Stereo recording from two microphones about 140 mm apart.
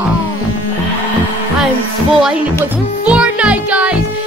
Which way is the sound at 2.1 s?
5° right (ahead or behind).